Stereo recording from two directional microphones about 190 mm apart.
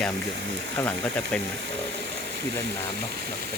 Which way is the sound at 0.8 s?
5° left (ahead or behind).